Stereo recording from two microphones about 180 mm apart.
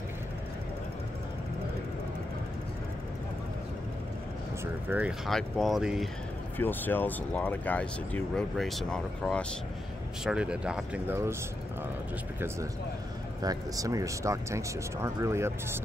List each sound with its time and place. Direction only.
4.8 s speech: 10° right (ahead or behind)
6.6 s speech: 10° left (ahead or behind)
10.2 s speech: 5° right (ahead or behind)
13.4 s speech: 20° right (ahead or behind)